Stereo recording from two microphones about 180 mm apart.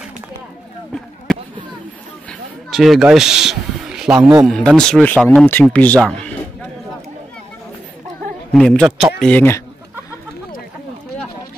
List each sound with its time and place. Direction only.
0.9 s basketball bounce: centre (ahead or behind)
2.7 s speech: centre (ahead or behind)
8.5 s a man's voice: 5° left (ahead or behind)